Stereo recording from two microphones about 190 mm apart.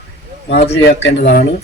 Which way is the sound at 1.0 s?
55° left (ahead or behind).